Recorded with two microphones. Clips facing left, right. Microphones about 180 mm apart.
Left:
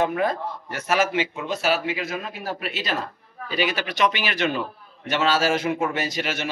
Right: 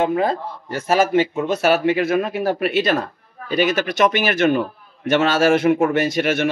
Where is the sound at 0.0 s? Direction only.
30° right (ahead or behind).